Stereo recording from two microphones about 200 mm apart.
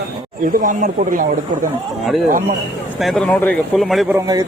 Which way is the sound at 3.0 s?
Centre (ahead or behind).